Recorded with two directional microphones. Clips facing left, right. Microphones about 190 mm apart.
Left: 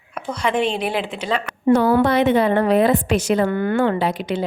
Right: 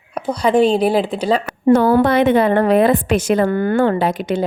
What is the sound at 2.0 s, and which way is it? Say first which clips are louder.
A woman's voice: right 3 dB; 55° right (ahead or behind).